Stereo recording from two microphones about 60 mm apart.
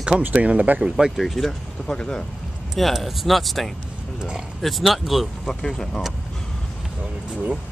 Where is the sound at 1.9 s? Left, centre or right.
Centre.